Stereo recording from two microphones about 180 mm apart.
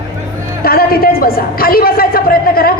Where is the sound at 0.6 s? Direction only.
55° left (ahead or behind).